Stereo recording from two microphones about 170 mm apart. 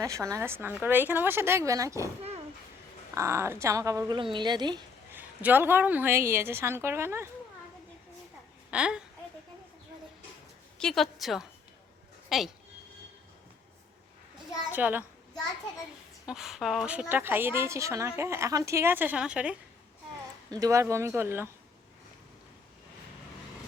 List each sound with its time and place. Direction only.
0.0 s a woman's voice: 20° right (ahead or behind)
3.2 s a woman's voice: 15° right (ahead or behind)
5.1 s a woman's voice: 10° right (ahead or behind)
8.7 s speech: 5° right (ahead or behind)
10.8 s a woman's voice: centre (ahead or behind)
14.7 s a child's voice: 10° right (ahead or behind)
16.2 s a woman's voice: centre (ahead or behind)
20.5 s a woman's voice: 20° right (ahead or behind)